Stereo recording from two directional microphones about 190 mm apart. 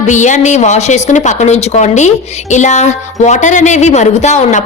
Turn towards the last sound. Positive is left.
turn(degrees=40)  # may be behind; listen again after turning